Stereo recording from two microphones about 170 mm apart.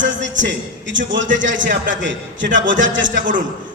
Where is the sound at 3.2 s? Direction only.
50° right (ahead or behind).